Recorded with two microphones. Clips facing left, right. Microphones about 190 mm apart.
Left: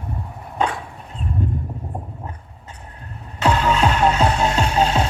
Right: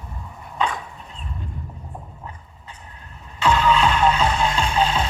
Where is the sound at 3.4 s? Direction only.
45° left (ahead or behind).